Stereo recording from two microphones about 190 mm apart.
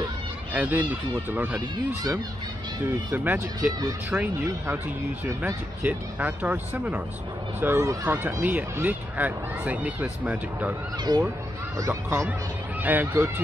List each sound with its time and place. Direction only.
0.5 s speech: 10° right (ahead or behind)
3.1 s speech: 10° right (ahead or behind)
11.1 s speech: 25° right (ahead or behind)